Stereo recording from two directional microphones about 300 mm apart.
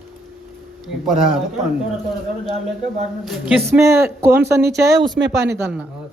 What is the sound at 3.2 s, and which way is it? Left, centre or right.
Speech, centre.